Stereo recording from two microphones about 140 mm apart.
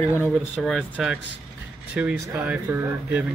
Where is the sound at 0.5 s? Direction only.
5° right (ahead or behind).